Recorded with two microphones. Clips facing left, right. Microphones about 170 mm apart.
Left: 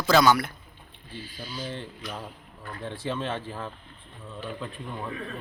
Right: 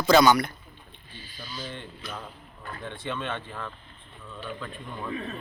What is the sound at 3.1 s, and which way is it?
Speech, 30° left (ahead or behind).